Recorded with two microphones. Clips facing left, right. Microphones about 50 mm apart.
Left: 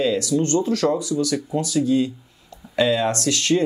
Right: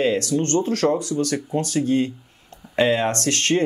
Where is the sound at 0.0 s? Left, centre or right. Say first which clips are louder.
Even; right.